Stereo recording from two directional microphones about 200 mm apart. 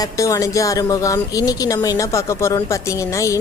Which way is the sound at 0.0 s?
15° left (ahead or behind).